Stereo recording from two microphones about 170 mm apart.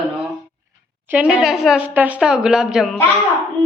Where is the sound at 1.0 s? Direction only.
10° right (ahead or behind).